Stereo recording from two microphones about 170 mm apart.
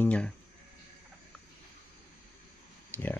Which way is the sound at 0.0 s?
5° left (ahead or behind).